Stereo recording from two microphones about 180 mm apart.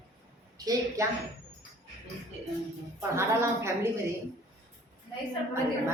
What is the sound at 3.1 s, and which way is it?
Speech, 15° right (ahead or behind).